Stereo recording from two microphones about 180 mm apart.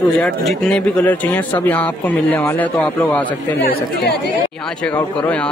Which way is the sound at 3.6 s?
60° left (ahead or behind).